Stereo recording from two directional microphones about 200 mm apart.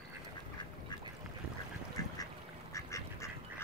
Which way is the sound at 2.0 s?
20° left (ahead or behind).